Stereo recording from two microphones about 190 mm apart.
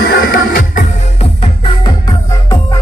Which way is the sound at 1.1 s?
30° left (ahead or behind).